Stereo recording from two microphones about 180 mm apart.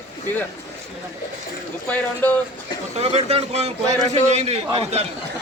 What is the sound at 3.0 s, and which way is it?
Speech, 35° right (ahead or behind).